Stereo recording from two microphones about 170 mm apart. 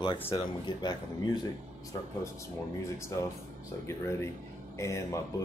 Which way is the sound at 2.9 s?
15° left (ahead or behind).